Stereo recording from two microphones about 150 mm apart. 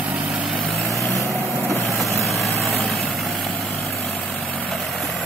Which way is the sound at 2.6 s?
Centre (ahead or behind).